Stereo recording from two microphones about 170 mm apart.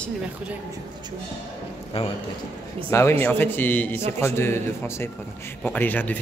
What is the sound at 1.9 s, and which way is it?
Speech, 35° left (ahead or behind).